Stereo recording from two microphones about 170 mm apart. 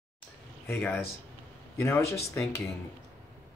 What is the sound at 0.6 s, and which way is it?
A man's voice, 10° left (ahead or behind).